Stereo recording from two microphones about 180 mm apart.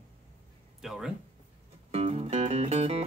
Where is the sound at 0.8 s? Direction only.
Centre (ahead or behind).